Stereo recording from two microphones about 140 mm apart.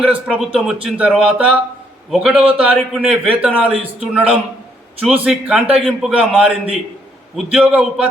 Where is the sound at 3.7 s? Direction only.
40° right (ahead or behind).